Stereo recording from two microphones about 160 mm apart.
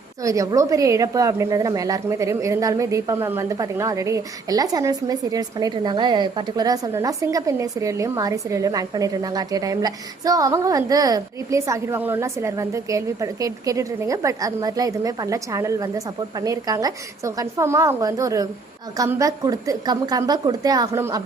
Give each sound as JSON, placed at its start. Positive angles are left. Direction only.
{"t": 0.2, "sound": "a woman's voice", "side_deg": -20}